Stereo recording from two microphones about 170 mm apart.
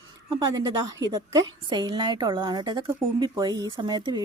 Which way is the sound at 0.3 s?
25° right (ahead or behind).